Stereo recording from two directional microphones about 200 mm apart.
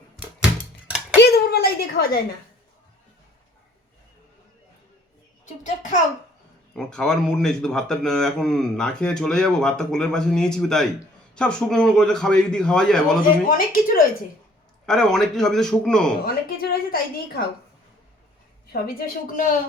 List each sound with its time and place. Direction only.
1.2 s a sound: 55° left (ahead or behind)
5.6 s a child's voice: 40° left (ahead or behind)
6.7 s speech: 5° left (ahead or behind)
13.5 s speech: 45° left (ahead or behind)
14.8 s speech: centre (ahead or behind)
16.2 s speech: 50° left (ahead or behind)
18.7 s speech: 45° left (ahead or behind)